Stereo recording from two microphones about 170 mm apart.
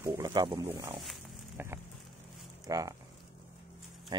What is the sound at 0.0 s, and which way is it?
Speech, 20° right (ahead or behind).